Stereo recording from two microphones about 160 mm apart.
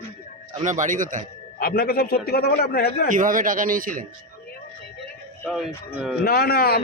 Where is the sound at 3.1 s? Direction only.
55° right (ahead or behind).